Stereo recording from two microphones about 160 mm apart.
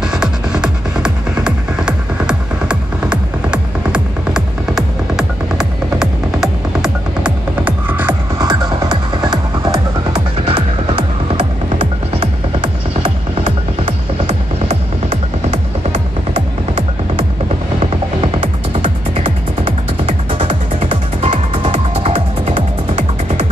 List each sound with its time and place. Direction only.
0.0 s music: 5° right (ahead or behind)
8.4 s music: 25° right (ahead or behind)
13.8 s music: 40° right (ahead or behind)